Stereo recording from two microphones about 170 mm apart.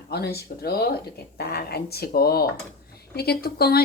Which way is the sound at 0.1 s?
70° left (ahead or behind).